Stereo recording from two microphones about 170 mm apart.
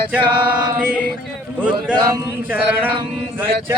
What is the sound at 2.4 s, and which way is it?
Speech, 10° right (ahead or behind).